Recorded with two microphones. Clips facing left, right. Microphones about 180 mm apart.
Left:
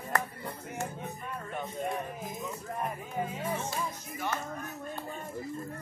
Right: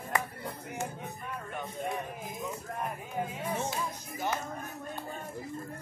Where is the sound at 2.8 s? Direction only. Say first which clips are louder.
Left 1 dB; centre (ahead or behind).